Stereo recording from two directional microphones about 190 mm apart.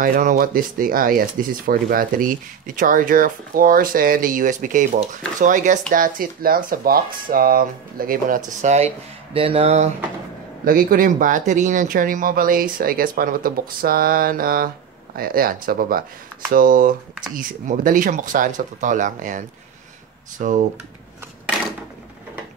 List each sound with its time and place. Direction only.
0.0 s speech: 45° right (ahead or behind)
8.5 s speech: 35° right (ahead or behind)
10.6 s speech: 50° right (ahead or behind)